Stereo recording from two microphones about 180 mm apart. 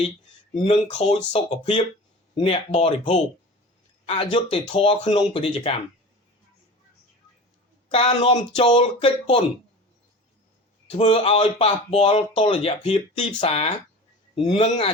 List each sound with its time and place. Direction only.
0.5 s speech: 30° left (ahead or behind)
7.9 s speech: 30° left (ahead or behind)
10.9 s speech: 35° left (ahead or behind)